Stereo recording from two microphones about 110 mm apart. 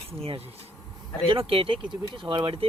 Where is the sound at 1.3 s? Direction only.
55° right (ahead or behind).